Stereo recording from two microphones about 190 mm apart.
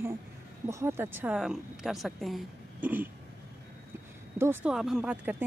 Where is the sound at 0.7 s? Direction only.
15° right (ahead or behind).